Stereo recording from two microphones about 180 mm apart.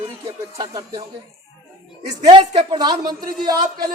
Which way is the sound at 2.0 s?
40° right (ahead or behind).